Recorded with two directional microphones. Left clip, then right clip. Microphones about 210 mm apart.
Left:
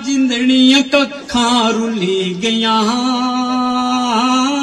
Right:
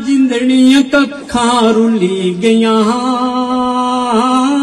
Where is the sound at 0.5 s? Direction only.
30° left (ahead or behind).